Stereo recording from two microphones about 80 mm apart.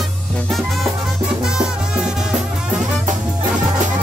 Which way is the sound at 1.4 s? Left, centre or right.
Centre.